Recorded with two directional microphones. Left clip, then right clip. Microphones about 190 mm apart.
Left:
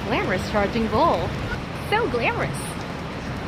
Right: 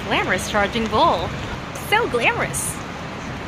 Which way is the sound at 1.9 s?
15° right (ahead or behind).